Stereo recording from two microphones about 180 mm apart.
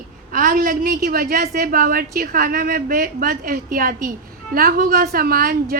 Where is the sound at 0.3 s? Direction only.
50° right (ahead or behind).